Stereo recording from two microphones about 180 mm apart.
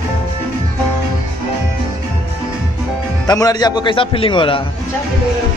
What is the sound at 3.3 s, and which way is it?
A man's voice, 20° left (ahead or behind).